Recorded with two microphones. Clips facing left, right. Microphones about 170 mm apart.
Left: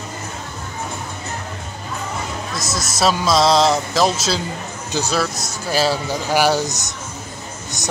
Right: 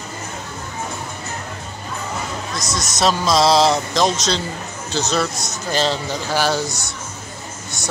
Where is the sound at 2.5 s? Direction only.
5° left (ahead or behind).